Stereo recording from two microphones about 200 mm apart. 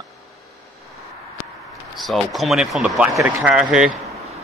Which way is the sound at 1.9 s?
Centre (ahead or behind).